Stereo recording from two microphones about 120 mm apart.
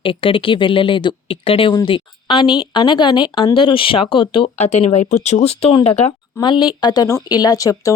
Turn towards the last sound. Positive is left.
turn(degrees=30)  # may be behind; listen again after turning